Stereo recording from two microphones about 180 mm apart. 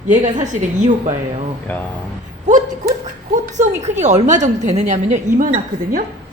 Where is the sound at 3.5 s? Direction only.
40° right (ahead or behind).